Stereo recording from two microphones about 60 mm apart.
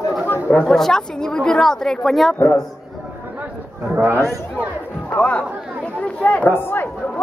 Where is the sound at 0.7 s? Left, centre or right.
Centre.